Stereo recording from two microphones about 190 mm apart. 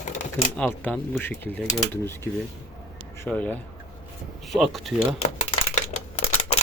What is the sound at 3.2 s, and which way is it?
Speech, 10° left (ahead or behind).